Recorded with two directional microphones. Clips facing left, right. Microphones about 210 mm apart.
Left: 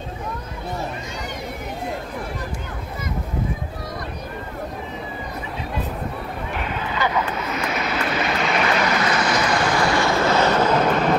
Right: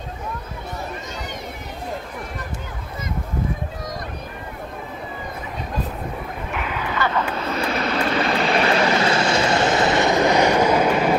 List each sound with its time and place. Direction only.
7.0 s vehicle: 15° left (ahead or behind)
7.4 s vehicle: 30° right (ahead or behind); by 11.1 s 10° right (ahead or behind)